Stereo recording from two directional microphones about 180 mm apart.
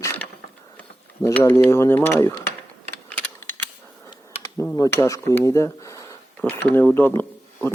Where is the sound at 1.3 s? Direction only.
15° left (ahead or behind).